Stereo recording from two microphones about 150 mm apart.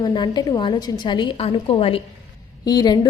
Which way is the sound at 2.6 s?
25° left (ahead or behind).